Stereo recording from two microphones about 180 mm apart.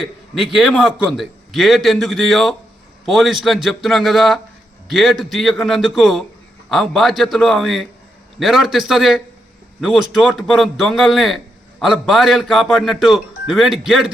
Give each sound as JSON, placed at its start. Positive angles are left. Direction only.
{"t": 0.0, "sound": "a man's voice", "side_deg": 0}